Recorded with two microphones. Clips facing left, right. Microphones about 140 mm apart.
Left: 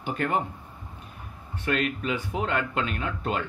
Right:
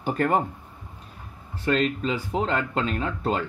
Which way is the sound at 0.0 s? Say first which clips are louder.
Right 4 dB; 40° right (ahead or behind).